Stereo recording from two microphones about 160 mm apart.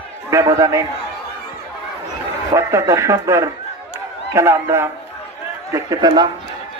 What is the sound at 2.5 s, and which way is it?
A man's voice, 20° right (ahead or behind).